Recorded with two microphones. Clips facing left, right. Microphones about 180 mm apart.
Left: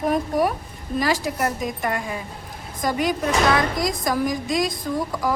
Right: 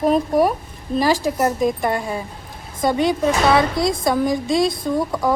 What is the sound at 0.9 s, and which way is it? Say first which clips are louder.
A woman's voice: right 5 dB; 30° right (ahead or behind).